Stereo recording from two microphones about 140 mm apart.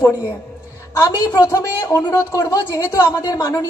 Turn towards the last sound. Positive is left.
turn(degrees=25)  # may be behind; listen again after turning